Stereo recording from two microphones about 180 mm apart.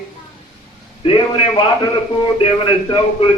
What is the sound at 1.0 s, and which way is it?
Speech, 30° left (ahead or behind).